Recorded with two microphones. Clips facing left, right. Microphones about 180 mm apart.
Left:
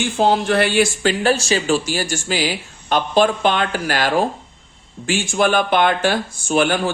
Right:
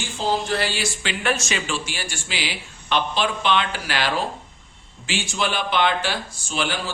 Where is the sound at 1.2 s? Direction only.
35° left (ahead or behind).